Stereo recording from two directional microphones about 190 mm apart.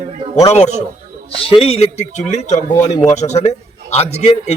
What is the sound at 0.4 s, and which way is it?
Speech, 35° left (ahead or behind).